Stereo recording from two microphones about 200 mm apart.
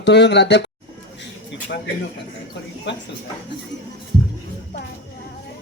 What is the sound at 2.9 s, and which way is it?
Speech, 60° left (ahead or behind).